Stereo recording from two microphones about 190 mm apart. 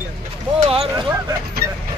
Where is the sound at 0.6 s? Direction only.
30° right (ahead or behind).